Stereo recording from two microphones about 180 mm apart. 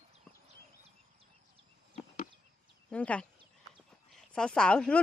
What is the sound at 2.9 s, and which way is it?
Speech, 5° left (ahead or behind).